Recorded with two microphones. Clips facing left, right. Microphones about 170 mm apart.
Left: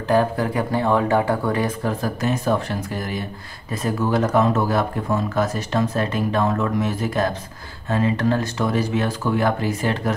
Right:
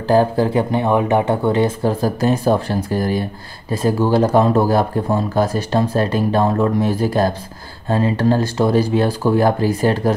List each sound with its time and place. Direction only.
0.1 s speech: 30° right (ahead or behind)